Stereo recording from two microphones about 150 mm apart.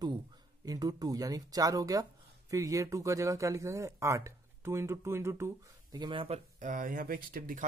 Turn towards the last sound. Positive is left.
turn(degrees=-70)  # may be behind; listen again after turning